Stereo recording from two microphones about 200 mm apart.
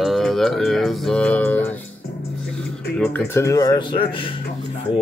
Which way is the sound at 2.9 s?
10° left (ahead or behind).